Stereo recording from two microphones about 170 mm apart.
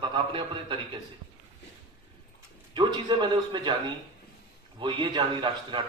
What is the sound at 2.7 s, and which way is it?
A man's voice, 25° right (ahead or behind).